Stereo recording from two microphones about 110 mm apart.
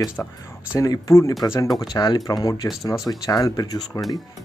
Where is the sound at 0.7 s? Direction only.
30° left (ahead or behind).